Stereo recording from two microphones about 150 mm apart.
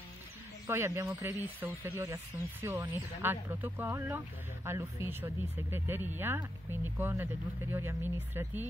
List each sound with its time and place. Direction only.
0.7 s speech: 15° right (ahead or behind)